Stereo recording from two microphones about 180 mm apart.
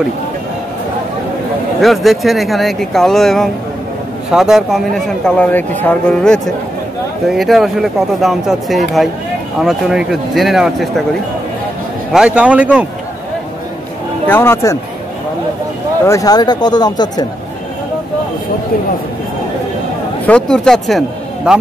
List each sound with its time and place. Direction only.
1.8 s speech: centre (ahead or behind)
12.1 s a man's voice: 5° right (ahead or behind)
14.2 s speech: 10° left (ahead or behind)
16.1 s speech: 20° left (ahead or behind)
20.2 s speech: 5° left (ahead or behind)